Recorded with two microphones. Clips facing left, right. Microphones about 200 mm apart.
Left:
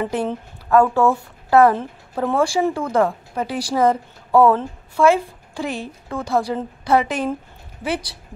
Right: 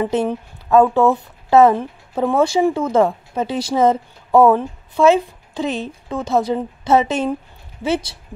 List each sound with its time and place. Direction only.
0.0 s speech: 20° right (ahead or behind)